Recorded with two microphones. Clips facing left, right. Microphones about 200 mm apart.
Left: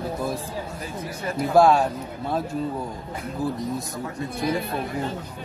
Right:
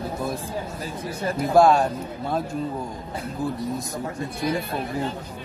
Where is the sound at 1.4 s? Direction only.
Centre (ahead or behind).